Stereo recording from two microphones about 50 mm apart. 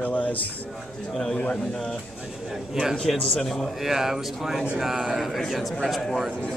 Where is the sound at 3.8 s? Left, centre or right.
Centre.